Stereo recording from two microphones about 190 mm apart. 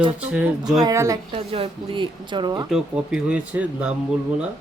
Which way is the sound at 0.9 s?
20° right (ahead or behind).